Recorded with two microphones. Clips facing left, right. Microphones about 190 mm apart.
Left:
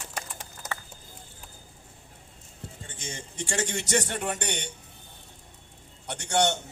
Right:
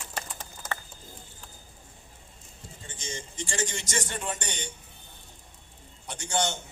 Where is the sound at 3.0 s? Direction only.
65° left (ahead or behind).